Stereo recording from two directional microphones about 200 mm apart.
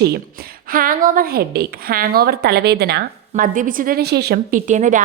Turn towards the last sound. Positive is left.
turn(degrees=-40)  # may be behind; listen again after turning